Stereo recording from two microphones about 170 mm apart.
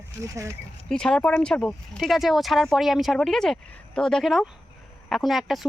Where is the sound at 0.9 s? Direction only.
5° left (ahead or behind).